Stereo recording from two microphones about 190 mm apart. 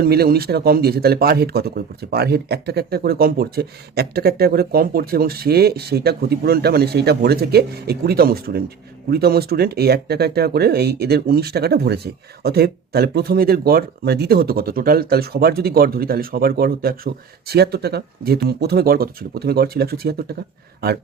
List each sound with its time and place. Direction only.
0.0 s speech: 55° right (ahead or behind)